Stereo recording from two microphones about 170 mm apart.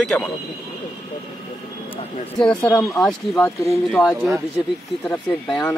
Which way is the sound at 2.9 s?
Centre (ahead or behind).